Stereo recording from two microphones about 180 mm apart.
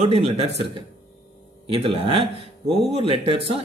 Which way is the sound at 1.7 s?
30° right (ahead or behind).